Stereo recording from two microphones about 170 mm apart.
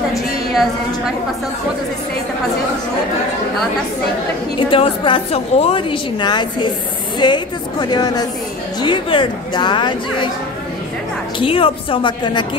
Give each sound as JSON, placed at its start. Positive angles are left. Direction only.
{"t": 0.1, "sound": "a sound", "side_deg": 0}
{"t": 4.6, "sound": "a woman's voice", "side_deg": 30}
{"t": 11.3, "sound": "a woman's voice", "side_deg": 35}